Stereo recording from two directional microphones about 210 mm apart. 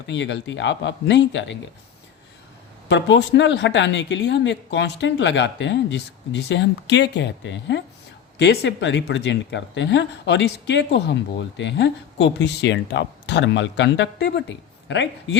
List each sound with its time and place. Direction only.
0.1 s speech: 60° left (ahead or behind)
2.9 s speech: 55° left (ahead or behind)